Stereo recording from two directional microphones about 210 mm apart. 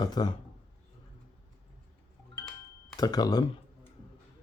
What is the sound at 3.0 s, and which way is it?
Speech, 20° left (ahead or behind).